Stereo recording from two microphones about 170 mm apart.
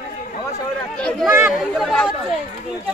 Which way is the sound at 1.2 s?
15° right (ahead or behind).